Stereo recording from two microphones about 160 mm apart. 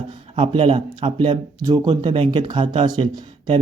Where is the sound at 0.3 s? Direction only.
35° right (ahead or behind).